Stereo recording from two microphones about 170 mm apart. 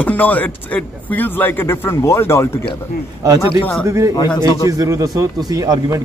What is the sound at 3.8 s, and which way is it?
A man's voice, 15° right (ahead or behind).